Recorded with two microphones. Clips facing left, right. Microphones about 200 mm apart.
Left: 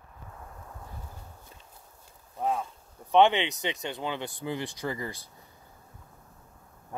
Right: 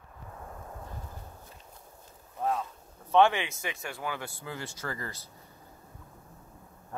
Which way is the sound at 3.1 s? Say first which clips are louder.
Left 2 dB; 20° left (ahead or behind).